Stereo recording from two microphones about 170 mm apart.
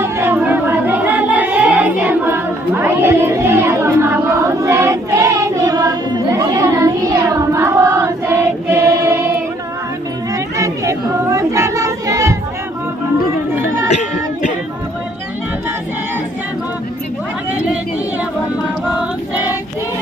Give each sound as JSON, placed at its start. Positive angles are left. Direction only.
{"t": 0.0, "sound": "music", "side_deg": -15}
{"t": 10.6, "sound": "child singing", "side_deg": -20}